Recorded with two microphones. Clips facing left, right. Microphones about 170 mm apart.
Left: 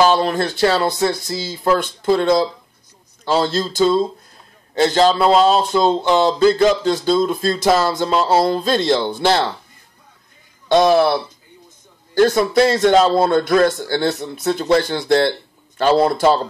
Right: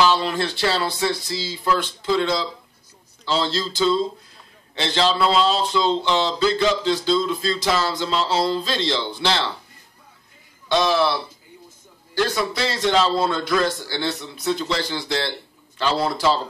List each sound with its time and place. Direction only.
0.0 s speech: 45° left (ahead or behind)
10.7 s speech: 50° left (ahead or behind)